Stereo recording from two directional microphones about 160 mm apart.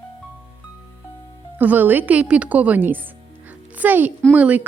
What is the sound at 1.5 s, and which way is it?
A woman's voice, 10° right (ahead or behind).